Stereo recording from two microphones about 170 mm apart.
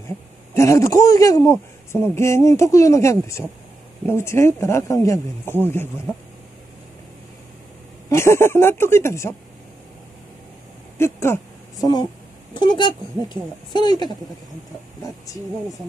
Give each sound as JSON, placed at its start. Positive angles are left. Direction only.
{"t": 0.6, "sound": "speech", "side_deg": 15}
{"t": 8.1, "sound": "speech", "side_deg": 15}
{"t": 11.0, "sound": "speech", "side_deg": 15}